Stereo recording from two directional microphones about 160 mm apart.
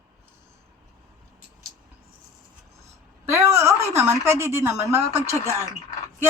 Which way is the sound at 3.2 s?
15° right (ahead or behind).